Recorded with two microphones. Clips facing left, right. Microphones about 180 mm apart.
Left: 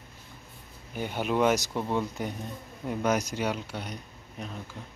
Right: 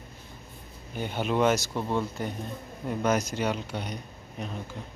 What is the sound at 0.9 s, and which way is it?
Speech, 10° left (ahead or behind).